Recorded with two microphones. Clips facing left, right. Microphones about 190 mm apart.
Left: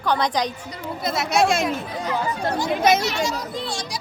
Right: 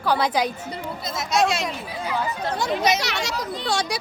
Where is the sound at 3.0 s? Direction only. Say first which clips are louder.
Left 3 dB; 70° right (ahead or behind).